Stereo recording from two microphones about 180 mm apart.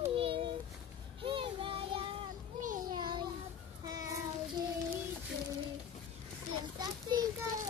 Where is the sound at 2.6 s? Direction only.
50° right (ahead or behind).